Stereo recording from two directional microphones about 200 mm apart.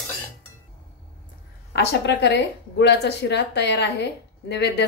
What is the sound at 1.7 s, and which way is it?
Speech, 60° left (ahead or behind).